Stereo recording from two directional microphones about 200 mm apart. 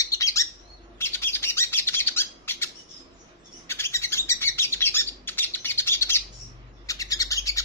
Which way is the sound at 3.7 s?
15° left (ahead or behind).